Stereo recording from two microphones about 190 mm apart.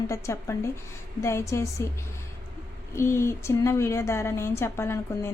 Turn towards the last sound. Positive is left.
turn(degrees=15)  # may be behind; listen again after turning